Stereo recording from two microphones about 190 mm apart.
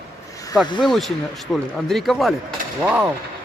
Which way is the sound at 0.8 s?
Centre (ahead or behind).